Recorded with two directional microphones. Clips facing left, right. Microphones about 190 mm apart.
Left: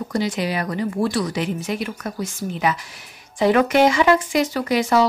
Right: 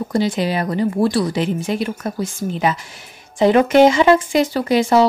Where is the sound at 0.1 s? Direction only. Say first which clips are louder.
Right 4 dB; 30° right (ahead or behind).